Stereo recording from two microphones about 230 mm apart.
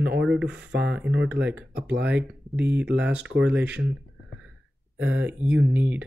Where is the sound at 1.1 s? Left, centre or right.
Right.